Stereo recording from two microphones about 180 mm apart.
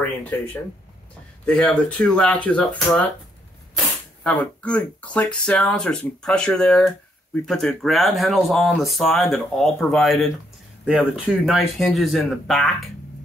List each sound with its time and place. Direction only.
0.0 s speech: 10° left (ahead or behind)
4.2 s speech: 5° left (ahead or behind)